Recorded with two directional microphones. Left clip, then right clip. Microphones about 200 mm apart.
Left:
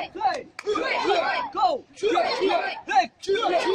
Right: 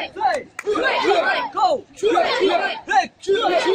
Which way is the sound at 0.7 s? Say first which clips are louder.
Right 5 dB; 5° right (ahead or behind).